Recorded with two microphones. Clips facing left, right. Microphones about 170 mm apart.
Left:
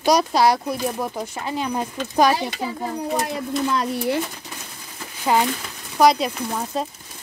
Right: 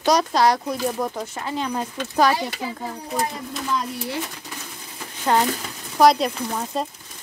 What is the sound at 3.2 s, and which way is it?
Speech, 75° left (ahead or behind).